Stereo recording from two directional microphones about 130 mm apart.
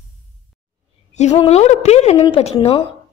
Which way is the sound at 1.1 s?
65° left (ahead or behind).